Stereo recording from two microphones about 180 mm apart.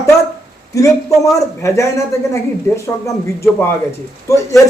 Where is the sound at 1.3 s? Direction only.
15° left (ahead or behind).